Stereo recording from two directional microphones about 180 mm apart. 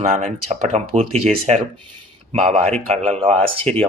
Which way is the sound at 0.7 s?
35° right (ahead or behind).